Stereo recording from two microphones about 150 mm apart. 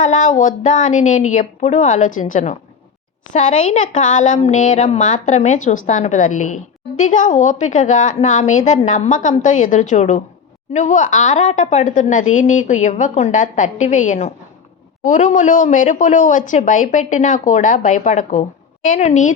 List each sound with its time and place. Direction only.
0.0 s a woman's voice: 50° left (ahead or behind)